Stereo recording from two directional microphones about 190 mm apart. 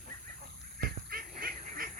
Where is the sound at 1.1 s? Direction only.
50° right (ahead or behind).